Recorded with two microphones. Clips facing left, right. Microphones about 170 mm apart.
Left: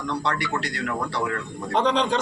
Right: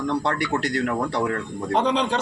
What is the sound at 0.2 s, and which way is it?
A man's voice, 50° right (ahead or behind).